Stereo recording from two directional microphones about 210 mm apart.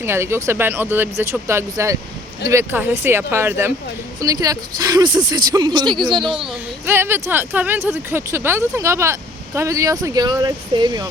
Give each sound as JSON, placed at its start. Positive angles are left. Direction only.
{"t": 0.0, "sound": "speech", "side_deg": -10}
{"t": 6.4, "sound": "speech", "side_deg": -10}